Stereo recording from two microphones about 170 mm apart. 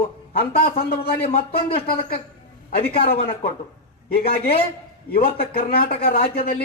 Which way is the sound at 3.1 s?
35° left (ahead or behind).